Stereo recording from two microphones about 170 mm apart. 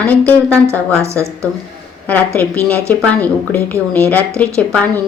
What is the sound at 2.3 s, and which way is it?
Speech, 10° left (ahead or behind).